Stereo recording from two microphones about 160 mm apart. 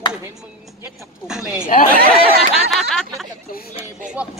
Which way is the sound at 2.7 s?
5° left (ahead or behind).